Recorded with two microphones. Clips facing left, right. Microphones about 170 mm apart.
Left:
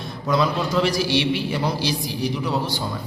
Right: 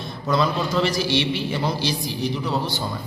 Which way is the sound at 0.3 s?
5° left (ahead or behind).